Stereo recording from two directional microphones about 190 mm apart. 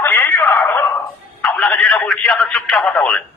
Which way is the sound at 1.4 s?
5° left (ahead or behind).